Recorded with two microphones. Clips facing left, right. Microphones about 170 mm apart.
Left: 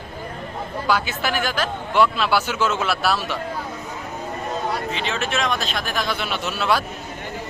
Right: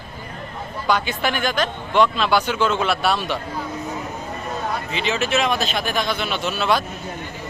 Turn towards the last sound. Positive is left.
turn(degrees=5)  # may be behind; listen again after turning